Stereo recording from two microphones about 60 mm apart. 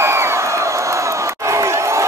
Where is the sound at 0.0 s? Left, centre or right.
Right.